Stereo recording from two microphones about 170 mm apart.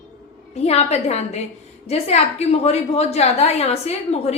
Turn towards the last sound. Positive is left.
turn(degrees=40)  # may be behind; listen again after turning